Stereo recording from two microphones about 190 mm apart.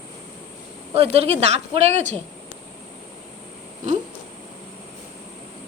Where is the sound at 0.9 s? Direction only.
30° right (ahead or behind).